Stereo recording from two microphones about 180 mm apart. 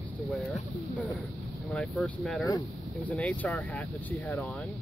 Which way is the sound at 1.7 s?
5° left (ahead or behind).